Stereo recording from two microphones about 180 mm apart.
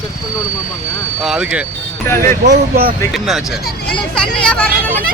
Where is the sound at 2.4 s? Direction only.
60° right (ahead or behind).